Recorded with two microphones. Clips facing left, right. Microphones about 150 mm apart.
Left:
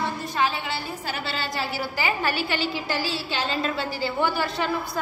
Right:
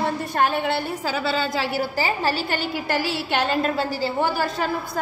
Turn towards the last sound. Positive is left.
turn(degrees=-40)  # may be behind; listen again after turning